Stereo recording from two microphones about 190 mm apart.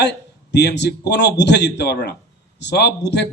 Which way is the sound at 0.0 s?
65° left (ahead or behind).